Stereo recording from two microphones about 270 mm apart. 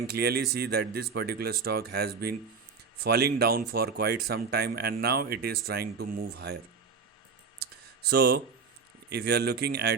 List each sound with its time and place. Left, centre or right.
0.1 s speech: right
8.1 s speech: right